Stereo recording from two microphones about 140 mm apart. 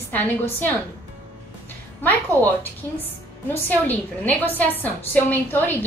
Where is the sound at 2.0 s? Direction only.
15° left (ahead or behind).